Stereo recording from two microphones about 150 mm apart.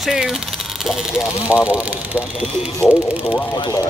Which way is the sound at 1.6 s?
10° right (ahead or behind).